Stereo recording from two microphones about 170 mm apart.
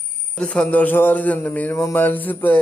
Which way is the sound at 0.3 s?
5° left (ahead or behind).